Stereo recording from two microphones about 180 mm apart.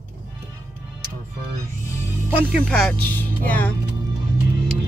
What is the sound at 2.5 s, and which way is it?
Speech, 5° left (ahead or behind).